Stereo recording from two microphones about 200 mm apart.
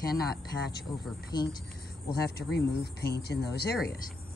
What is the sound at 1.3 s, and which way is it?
Speech, 20° left (ahead or behind).